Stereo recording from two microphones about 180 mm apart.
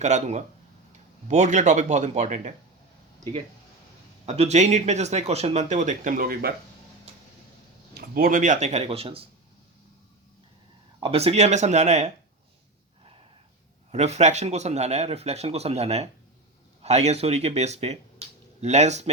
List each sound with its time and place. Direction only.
0.0 s speech: 40° right (ahead or behind)
4.3 s speech: 35° right (ahead or behind); by 6.5 s 55° right (ahead or behind)
7.9 s speech: 55° right (ahead or behind); by 9.2 s 30° right (ahead or behind)
11.0 s speech: 35° right (ahead or behind)
13.9 s speech: 40° right (ahead or behind)